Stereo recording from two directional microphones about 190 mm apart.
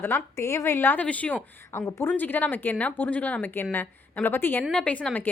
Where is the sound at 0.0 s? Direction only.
10° left (ahead or behind).